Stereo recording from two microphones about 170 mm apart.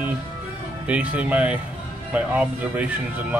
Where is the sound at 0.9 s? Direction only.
10° right (ahead or behind).